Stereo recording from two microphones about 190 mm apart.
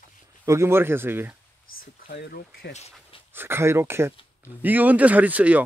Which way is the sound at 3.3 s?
10° right (ahead or behind).